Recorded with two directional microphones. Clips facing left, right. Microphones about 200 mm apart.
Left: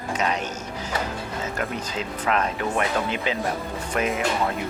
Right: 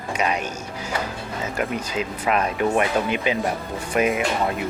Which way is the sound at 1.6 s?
15° right (ahead or behind).